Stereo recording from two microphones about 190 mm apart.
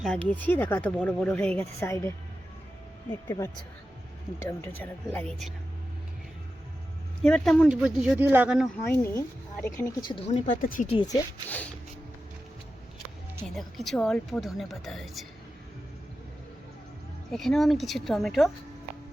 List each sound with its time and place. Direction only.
0.0 s speech: 5° left (ahead or behind)
4.8 s speech: 10° left (ahead or behind)
7.2 s speech: 5° left (ahead or behind)
8.9 s speech: 10° left (ahead or behind)
9.7 s speech: 20° left (ahead or behind)
10.2 s speech: 40° left (ahead or behind)
10.8 s speech: 30° left (ahead or behind)
11.4 s speech: 10° left (ahead or behind)
13.5 s speech: centre (ahead or behind)
17.3 s speech: centre (ahead or behind)